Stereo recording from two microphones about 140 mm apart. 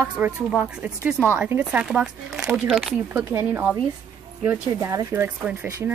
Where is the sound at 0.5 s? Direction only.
5° right (ahead or behind).